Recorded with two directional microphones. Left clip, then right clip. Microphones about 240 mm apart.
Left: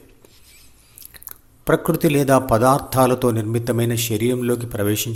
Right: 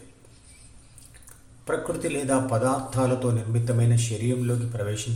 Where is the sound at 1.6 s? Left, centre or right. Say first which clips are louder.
Left 9 dB; left.